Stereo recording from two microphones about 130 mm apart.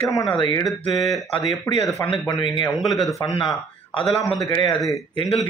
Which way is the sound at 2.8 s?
Centre (ahead or behind).